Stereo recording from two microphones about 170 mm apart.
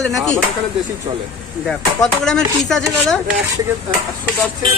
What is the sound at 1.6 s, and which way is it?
Speech, 5° left (ahead or behind).